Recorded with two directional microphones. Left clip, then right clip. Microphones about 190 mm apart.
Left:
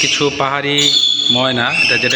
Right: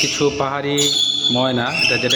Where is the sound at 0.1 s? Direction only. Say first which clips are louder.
Left 4 dB; centre (ahead or behind).